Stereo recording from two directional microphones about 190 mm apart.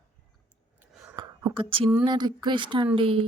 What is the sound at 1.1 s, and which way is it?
Whispering, 25° right (ahead or behind).